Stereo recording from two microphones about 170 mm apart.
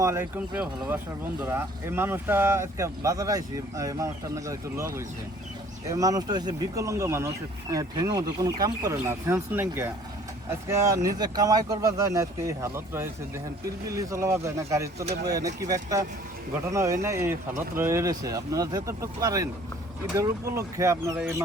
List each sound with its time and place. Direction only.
0.0 s speech: 15° right (ahead or behind)